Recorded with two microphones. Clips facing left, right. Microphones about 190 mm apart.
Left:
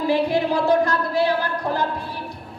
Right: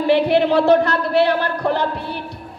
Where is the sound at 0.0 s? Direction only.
70° right (ahead or behind).